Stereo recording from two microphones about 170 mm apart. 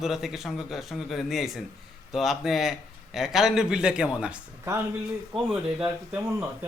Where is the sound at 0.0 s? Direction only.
Centre (ahead or behind).